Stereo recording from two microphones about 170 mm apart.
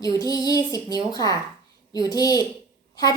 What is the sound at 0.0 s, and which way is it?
A woman's voice, 20° left (ahead or behind).